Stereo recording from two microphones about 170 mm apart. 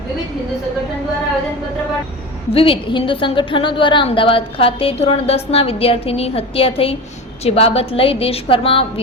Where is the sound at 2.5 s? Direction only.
30° left (ahead or behind).